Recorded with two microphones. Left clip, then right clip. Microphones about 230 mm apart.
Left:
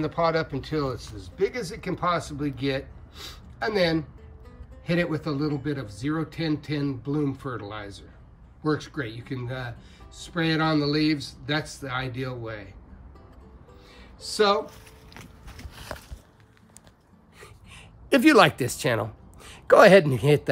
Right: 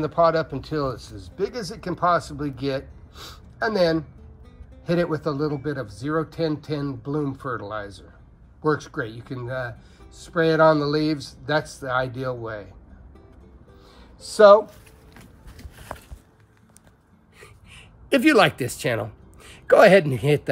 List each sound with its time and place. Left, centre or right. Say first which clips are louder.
0.0 s speech: right 5 dB; centre
1.0 s speech: right 1 dB; left
1.3 s speech: left 1 dB; centre
14.2 s speech: right 10 dB; centre
17.4 s a sound: right 1 dB; centre